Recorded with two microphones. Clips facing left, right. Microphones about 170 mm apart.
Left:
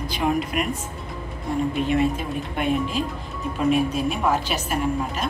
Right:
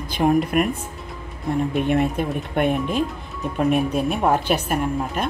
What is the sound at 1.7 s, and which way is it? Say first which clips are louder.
A woman's voice: right 1 dB; 60° right (ahead or behind).